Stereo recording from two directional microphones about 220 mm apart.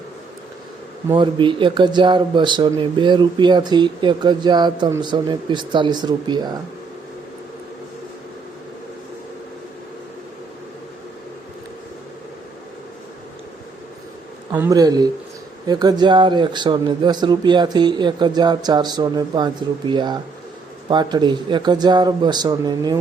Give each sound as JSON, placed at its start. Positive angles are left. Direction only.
{"t": 1.0, "sound": "speech", "side_deg": -20}
{"t": 14.5, "sound": "a man's voice", "side_deg": -10}